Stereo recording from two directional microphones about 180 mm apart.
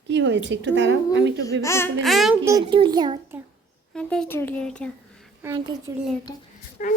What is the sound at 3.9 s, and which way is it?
Speech, 5° left (ahead or behind).